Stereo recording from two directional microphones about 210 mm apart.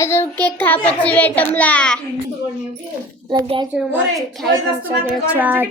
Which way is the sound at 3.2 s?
20° right (ahead or behind).